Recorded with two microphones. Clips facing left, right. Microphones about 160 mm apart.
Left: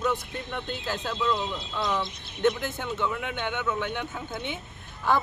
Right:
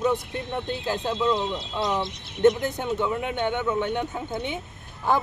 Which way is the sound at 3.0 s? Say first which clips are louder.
Right 3 dB; 45° right (ahead or behind).